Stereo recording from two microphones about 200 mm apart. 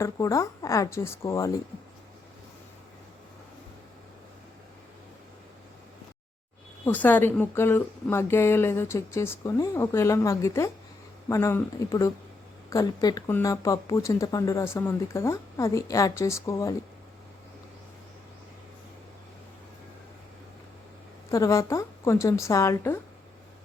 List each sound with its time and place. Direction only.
0.0 s speech: 15° left (ahead or behind)
6.8 s speech: 10° left (ahead or behind)
21.2 s speech: 15° left (ahead or behind)